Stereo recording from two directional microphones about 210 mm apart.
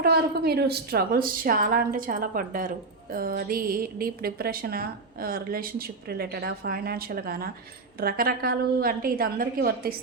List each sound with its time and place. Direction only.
0.0 s a woman's voice: 50° right (ahead or behind)